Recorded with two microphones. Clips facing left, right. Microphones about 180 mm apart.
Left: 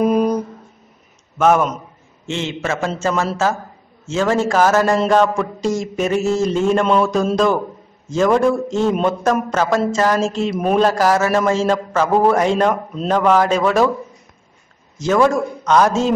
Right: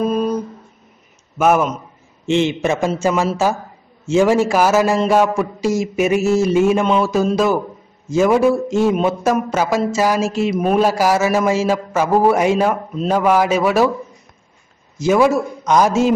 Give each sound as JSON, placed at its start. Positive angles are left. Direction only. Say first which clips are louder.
{"t": 0.0, "sound": "a sound", "louder": "left 2 dB", "side_deg": 15}
{"t": 1.4, "sound": "a man's voice", "louder": "even", "side_deg": -5}
{"t": 2.2, "sound": "a man's voice", "louder": "right 6 dB", "side_deg": -15}
{"t": 15.0, "sound": "a man's voice", "louder": "right 1 dB", "side_deg": -10}